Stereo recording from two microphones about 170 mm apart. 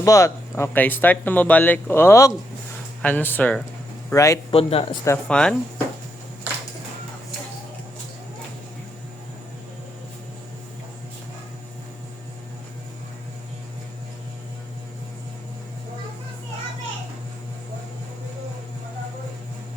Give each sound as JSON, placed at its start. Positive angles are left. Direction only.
{"t": 0.0, "sound": "a man's voice", "side_deg": 20}
{"t": 4.5, "sound": "speech", "side_deg": 35}
{"t": 5.0, "sound": "speech", "side_deg": 10}